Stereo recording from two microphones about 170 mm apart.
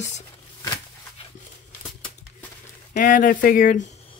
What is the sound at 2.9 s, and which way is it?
Speech, 50° left (ahead or behind).